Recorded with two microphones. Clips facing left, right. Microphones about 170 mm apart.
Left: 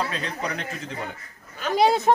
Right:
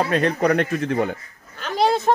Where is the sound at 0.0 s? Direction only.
60° right (ahead or behind).